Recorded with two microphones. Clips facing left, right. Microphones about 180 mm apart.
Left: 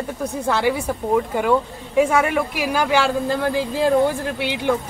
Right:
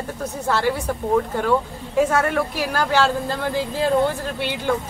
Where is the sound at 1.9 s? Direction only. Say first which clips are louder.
Left 2 dB; 10° left (ahead or behind).